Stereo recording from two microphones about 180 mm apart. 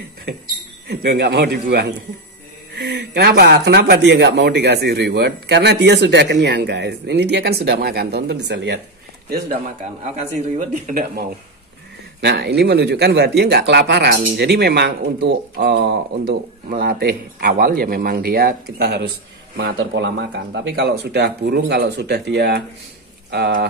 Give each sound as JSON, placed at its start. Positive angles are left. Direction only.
{"t": 0.8, "sound": "speech", "side_deg": -60}
{"t": 10.7, "sound": "speech", "side_deg": -50}
{"t": 12.2, "sound": "speech", "side_deg": -65}